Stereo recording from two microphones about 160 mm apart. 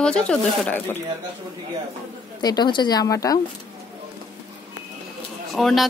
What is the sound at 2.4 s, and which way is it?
Speech, 25° left (ahead or behind).